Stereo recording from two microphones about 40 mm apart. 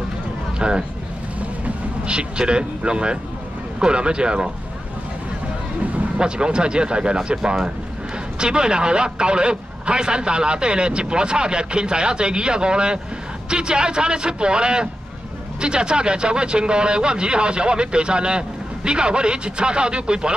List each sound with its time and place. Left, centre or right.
0.6 s speech: right
2.0 s speech: right
6.1 s speech: right